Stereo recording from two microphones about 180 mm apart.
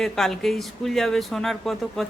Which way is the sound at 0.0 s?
Centre (ahead or behind).